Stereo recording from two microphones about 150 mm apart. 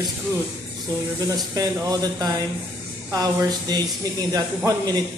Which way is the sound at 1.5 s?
25° right (ahead or behind).